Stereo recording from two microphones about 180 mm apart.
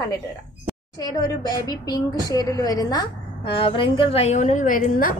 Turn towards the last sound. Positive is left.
turn(degrees=50)  # may be behind; listen again after turning